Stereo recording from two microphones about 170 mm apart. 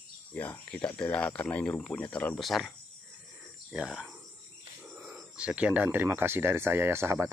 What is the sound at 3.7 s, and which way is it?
Speech, 5° right (ahead or behind).